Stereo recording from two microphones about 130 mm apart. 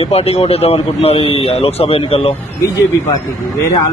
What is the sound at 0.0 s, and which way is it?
A man's voice, 50° left (ahead or behind).